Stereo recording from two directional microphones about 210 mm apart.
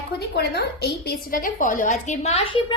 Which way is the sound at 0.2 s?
50° left (ahead or behind).